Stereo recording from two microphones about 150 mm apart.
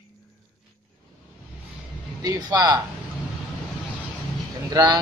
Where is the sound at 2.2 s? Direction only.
25° right (ahead or behind).